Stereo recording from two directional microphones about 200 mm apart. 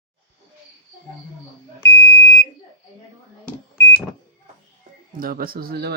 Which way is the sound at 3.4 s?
10° left (ahead or behind).